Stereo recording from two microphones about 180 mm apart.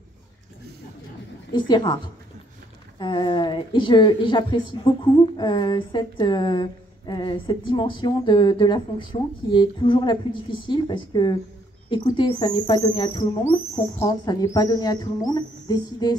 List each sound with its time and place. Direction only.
1.5 s a woman's voice: 25° left (ahead or behind)
3.0 s a woman's voice: 25° left (ahead or behind)